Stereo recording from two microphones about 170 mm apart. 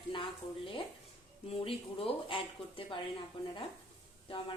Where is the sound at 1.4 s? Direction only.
35° left (ahead or behind).